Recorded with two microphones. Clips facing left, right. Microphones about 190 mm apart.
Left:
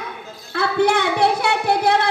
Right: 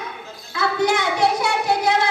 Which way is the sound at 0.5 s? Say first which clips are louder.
Left 2 dB; 60° left (ahead or behind).